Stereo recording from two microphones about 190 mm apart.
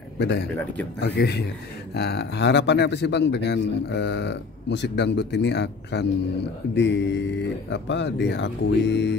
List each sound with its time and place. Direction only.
0.2 s a man's voice: 60° left (ahead or behind)